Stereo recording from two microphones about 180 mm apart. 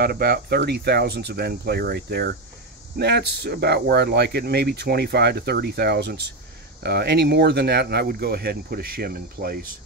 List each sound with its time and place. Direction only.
0.0 s speech: 60° right (ahead or behind)